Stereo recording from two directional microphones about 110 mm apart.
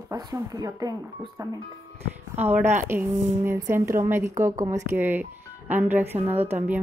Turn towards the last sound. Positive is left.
turn(degrees=-20)  # may be behind; listen again after turning